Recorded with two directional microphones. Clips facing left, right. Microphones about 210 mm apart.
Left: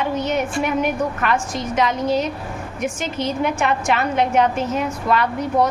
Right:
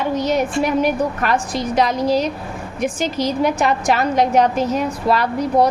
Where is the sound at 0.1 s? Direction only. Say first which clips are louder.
Right 3 dB; 35° right (ahead or behind).